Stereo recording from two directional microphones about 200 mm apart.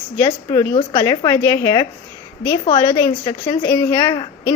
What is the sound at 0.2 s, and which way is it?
A woman's voice, 20° left (ahead or behind).